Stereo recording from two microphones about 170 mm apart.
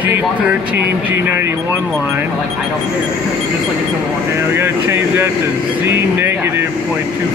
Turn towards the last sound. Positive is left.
turn(degrees=-15)  # may be behind; listen again after turning